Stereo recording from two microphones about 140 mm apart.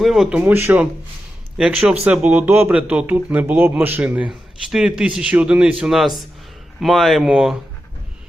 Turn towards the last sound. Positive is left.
turn(degrees=-5)  # may be behind; listen again after turning